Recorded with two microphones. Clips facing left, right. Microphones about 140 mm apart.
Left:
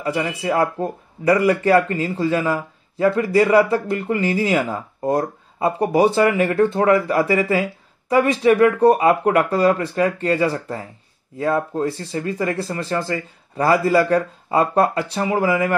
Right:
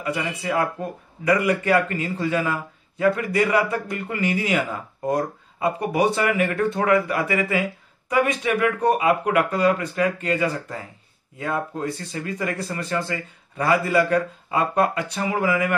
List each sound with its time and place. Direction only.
0.0 s speech: 30° left (ahead or behind)